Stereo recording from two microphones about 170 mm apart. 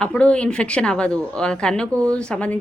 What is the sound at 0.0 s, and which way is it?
Speech, 5° left (ahead or behind).